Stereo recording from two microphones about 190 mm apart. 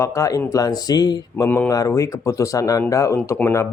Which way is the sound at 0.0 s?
15° left (ahead or behind).